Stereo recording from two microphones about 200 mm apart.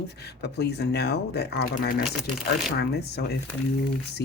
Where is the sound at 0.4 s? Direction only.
55° left (ahead or behind).